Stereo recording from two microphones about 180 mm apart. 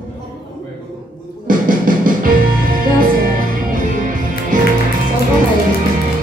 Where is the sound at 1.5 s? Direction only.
50° right (ahead or behind).